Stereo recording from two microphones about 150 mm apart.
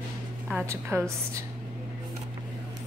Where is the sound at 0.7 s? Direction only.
20° right (ahead or behind).